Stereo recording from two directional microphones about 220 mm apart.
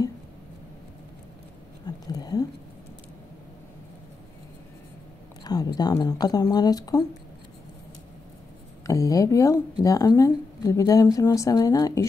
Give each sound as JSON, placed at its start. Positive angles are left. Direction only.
{"t": 1.9, "sound": "a sound", "side_deg": 15}
{"t": 5.4, "sound": "speech", "side_deg": 20}
{"t": 8.8, "sound": "speech", "side_deg": 15}